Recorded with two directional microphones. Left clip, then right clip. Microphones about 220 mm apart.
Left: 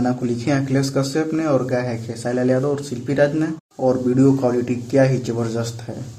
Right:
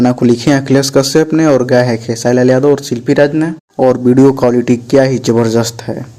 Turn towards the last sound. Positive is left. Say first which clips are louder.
# right 12 dB
turn(degrees=-35)  # may be behind; listen again after turning